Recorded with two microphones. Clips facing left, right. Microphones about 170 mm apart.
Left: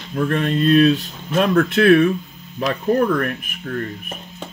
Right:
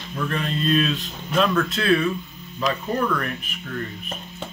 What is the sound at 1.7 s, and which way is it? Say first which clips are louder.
Speech: left 8 dB; 60° left (ahead or behind).